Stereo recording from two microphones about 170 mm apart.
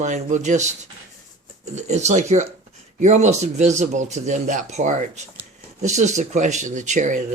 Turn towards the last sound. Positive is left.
turn(degrees=-45)  # may be behind; listen again after turning